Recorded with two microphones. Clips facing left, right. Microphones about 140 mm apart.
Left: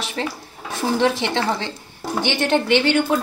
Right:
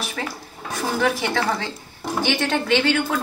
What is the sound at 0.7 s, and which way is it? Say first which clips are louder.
A woman's voice: left 3 dB; 25° left (ahead or behind).